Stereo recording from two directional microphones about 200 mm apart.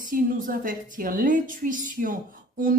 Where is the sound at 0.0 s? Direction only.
40° right (ahead or behind).